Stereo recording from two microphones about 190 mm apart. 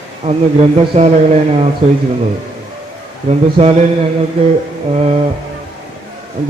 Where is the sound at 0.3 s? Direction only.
35° right (ahead or behind).